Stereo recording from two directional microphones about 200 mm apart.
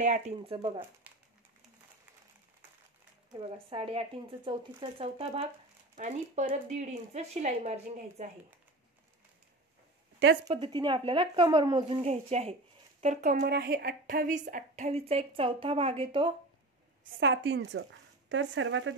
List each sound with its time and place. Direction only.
0.0 s speech: 30° right (ahead or behind)
1.1 s a sound: 10° right (ahead or behind)
3.3 s speech: 25° right (ahead or behind)
5.9 s speech: 40° right (ahead or behind)
10.5 s speech: 25° right (ahead or behind)
17.2 s a woman's voice: 65° right (ahead or behind)
18.3 s speech: 65° right (ahead or behind)